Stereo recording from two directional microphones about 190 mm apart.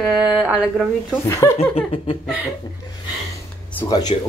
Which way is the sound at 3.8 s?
20° left (ahead or behind).